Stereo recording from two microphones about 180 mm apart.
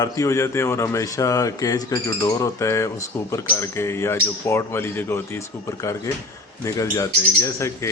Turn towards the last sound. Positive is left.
turn(degrees=15)  # may be behind; listen again after turning